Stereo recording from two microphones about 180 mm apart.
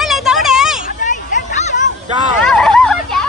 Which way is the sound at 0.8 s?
45° left (ahead or behind).